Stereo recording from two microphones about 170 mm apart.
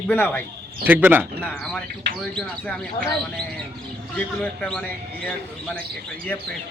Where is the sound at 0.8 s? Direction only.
10° right (ahead or behind).